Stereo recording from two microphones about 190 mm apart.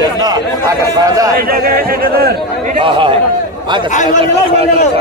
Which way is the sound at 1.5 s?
50° right (ahead or behind).